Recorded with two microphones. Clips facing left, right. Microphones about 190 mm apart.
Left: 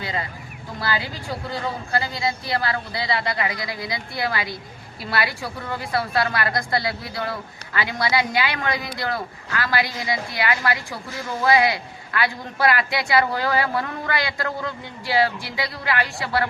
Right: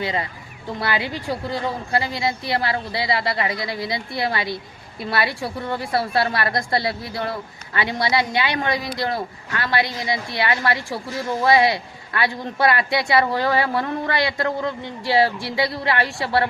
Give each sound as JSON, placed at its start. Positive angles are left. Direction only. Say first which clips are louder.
{"t": 0.0, "sound": "a woman's voice", "louder": "right 4 dB", "side_deg": -25}